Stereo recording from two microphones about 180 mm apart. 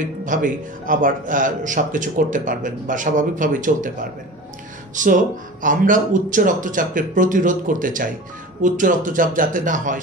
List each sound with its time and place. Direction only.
0.0 s a man's voice: 45° right (ahead or behind)
4.9 s a man's voice: 45° right (ahead or behind)